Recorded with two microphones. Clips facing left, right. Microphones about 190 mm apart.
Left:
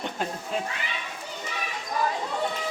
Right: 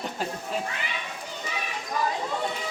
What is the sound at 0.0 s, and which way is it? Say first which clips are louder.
Speech: even; centre (ahead or behind).